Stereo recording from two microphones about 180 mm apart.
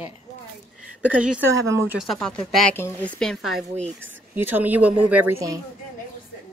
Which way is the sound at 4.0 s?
10° right (ahead or behind).